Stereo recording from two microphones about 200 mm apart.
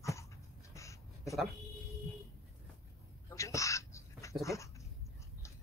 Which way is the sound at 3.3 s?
15° left (ahead or behind).